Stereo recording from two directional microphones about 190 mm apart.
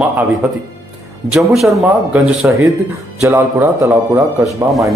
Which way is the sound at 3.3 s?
15° right (ahead or behind).